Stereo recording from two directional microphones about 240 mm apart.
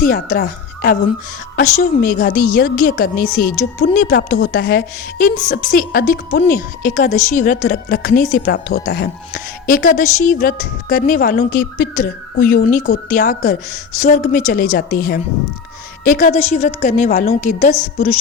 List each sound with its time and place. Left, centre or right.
0.0 s speech: left